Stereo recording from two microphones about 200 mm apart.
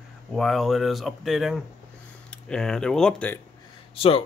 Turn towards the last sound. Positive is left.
turn(degrees=30)  # may be behind; listen again after turning